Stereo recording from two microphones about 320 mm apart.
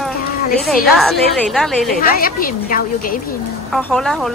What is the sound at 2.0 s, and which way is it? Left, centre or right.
Speech, left.